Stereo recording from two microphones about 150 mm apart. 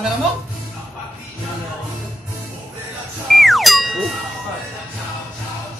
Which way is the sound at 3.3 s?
Centre (ahead or behind).